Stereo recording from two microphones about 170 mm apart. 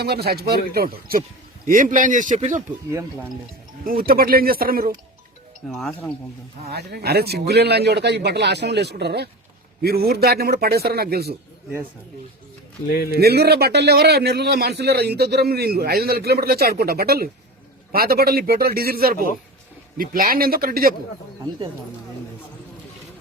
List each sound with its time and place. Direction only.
0.0 s a man's voice: 70° right (ahead or behind); by 2.6 s 45° right (ahead or behind)
2.9 s speech: 15° right (ahead or behind)
3.8 s a man's voice: 60° right (ahead or behind)
5.6 s speech: centre (ahead or behind)
6.7 s a man's voice: 70° right (ahead or behind)
9.8 s a man's voice: 65° right (ahead or behind)
13.1 s a man's voice: 70° right (ahead or behind)